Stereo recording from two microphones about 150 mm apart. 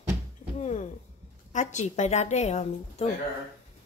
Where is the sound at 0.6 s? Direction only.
50° left (ahead or behind).